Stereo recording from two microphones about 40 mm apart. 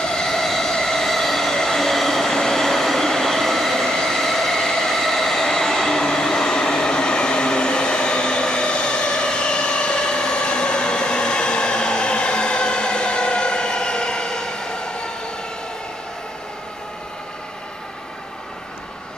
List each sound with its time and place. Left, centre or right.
0.0 s vehicle: centre